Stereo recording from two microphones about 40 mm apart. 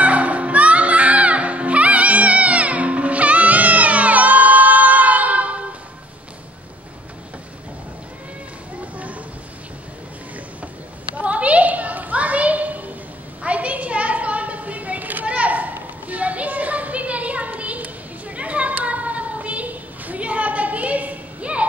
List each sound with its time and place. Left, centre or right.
0.0 s music: right
11.1 s a sound: right
15.2 s children playing: right